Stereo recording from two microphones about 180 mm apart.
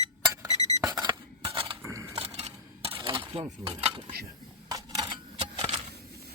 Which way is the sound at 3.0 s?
25° right (ahead or behind).